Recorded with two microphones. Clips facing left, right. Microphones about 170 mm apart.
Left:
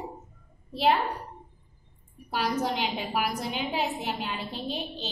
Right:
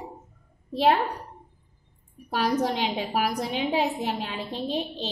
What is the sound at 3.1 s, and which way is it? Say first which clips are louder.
A woman's voice: right 3 dB; 35° right (ahead or behind).